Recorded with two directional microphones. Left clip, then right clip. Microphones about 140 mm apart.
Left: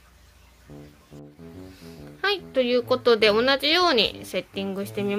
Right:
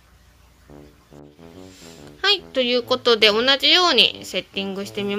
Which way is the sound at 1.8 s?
Centre (ahead or behind).